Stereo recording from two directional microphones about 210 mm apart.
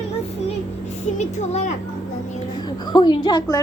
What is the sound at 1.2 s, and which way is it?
Speech, 35° left (ahead or behind).